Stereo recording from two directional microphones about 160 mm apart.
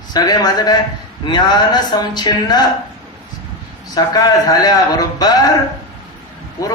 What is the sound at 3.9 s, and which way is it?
A man's voice, 25° left (ahead or behind).